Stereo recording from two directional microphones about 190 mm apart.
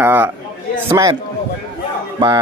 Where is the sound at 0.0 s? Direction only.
10° right (ahead or behind).